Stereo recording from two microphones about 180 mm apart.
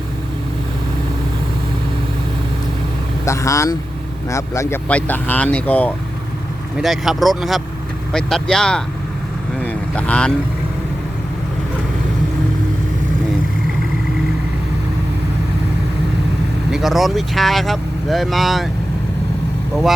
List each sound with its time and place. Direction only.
3.2 s speech: 15° left (ahead or behind)
6.7 s speech: centre (ahead or behind)
9.6 s boat: 5° left (ahead or behind)
16.7 s speech: centre (ahead or behind)